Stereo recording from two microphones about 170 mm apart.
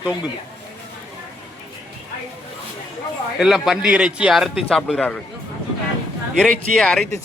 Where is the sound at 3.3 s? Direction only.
Centre (ahead or behind).